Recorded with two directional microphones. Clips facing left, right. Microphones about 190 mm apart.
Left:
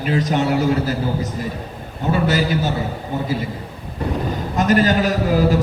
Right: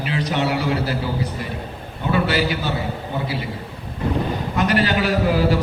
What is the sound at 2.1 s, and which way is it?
Speech, 45° left (ahead or behind).